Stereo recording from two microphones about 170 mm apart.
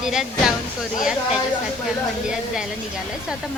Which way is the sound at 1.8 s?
5° right (ahead or behind).